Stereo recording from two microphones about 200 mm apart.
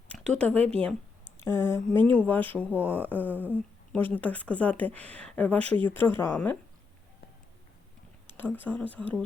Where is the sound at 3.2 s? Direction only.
10° right (ahead or behind).